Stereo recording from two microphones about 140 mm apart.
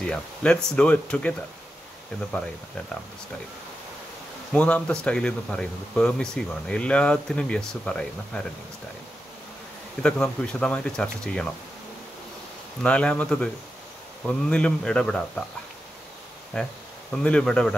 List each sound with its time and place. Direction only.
0.0 s speech: 5° left (ahead or behind)
4.5 s speech: 5° left (ahead or behind)
10.0 s speech: 5° left (ahead or behind)
12.8 s speech: 10° left (ahead or behind)
16.5 s speech: 5° left (ahead or behind)